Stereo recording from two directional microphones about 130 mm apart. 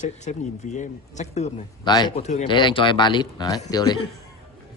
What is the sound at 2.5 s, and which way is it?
A man's voice, 40° left (ahead or behind).